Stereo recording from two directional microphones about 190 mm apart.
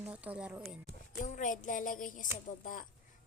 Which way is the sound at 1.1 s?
45° left (ahead or behind).